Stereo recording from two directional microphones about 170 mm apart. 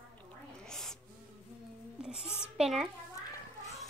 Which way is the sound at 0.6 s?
5° left (ahead or behind).